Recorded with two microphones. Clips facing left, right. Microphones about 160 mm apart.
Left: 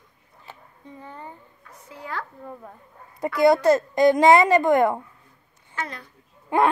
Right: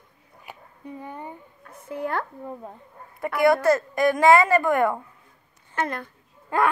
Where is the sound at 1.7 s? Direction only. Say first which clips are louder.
Right 6 dB; 55° right (ahead or behind).